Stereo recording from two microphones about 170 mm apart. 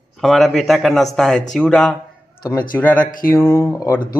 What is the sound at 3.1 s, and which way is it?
Mantra, 55° left (ahead or behind).